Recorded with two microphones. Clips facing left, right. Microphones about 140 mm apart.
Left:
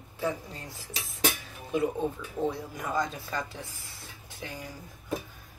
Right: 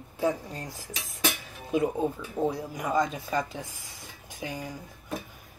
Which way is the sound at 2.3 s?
15° right (ahead or behind).